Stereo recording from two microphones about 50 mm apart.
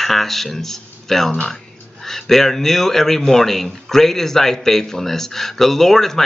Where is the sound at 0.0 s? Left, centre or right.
Centre.